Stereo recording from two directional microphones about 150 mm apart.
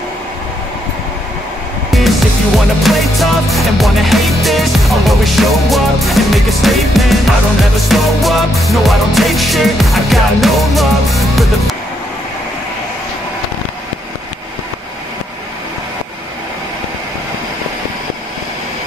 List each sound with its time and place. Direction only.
1.9 s music: centre (ahead or behind)